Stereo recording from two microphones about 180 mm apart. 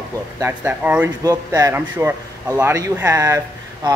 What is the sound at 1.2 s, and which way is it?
Speech, 20° right (ahead or behind).